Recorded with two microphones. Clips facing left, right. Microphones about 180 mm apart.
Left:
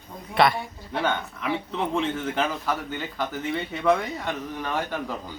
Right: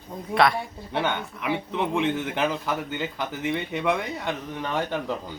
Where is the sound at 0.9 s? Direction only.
20° right (ahead or behind).